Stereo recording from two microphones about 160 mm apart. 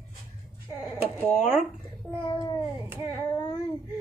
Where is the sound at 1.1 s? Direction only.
10° left (ahead or behind).